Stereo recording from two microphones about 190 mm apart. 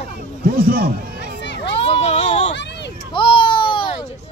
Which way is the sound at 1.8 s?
35° left (ahead or behind).